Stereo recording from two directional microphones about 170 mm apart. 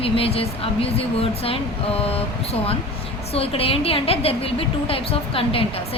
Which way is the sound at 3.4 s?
35° left (ahead or behind).